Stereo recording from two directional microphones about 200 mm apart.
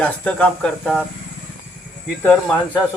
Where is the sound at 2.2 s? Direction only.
5° left (ahead or behind).